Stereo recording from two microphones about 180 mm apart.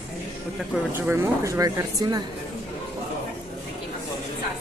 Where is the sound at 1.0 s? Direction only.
15° right (ahead or behind).